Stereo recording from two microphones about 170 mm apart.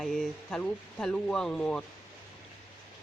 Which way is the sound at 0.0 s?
Centre (ahead or behind).